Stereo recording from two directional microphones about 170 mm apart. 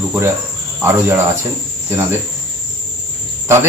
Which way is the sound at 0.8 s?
15° right (ahead or behind).